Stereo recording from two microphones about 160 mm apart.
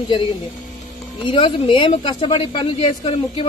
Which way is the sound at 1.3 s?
30° left (ahead or behind).